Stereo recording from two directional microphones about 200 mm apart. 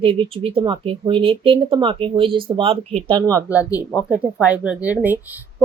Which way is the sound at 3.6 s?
20° left (ahead or behind).